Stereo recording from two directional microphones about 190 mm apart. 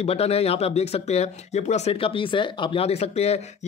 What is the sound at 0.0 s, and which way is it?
Speech, 30° left (ahead or behind).